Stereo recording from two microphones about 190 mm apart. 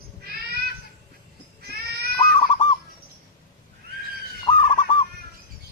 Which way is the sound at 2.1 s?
25° left (ahead or behind).